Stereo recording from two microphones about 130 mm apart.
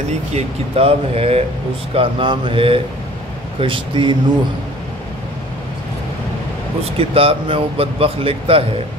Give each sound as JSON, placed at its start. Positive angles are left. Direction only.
{"t": 0.3, "sound": "speech", "side_deg": -55}
{"t": 6.8, "sound": "speech", "side_deg": -50}